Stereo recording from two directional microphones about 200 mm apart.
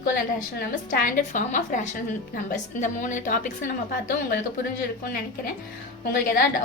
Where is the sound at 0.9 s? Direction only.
45° left (ahead or behind).